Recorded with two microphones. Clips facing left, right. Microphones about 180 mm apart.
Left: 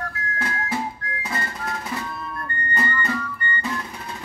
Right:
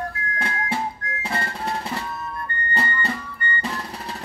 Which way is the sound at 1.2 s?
30° right (ahead or behind).